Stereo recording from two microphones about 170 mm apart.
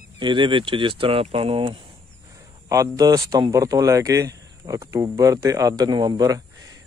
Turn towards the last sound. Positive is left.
turn(degrees=-25)  # may be behind; listen again after turning